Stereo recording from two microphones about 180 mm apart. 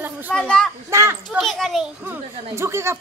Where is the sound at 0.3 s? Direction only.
5° left (ahead or behind).